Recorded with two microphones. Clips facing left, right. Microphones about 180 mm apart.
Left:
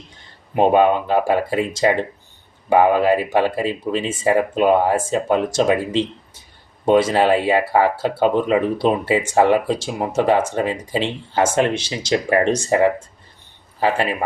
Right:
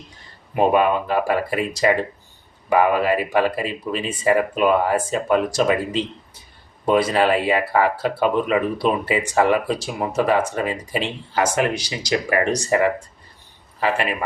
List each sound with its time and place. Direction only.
0.5 s speech: 25° left (ahead or behind)